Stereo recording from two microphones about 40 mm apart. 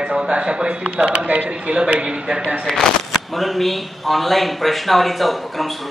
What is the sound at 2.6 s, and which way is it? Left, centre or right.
A man's voice, centre.